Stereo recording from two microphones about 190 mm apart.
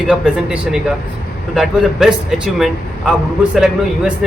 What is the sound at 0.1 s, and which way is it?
Speech, 5° right (ahead or behind).